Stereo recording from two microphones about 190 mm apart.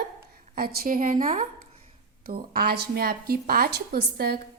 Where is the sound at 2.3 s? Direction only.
55° right (ahead or behind).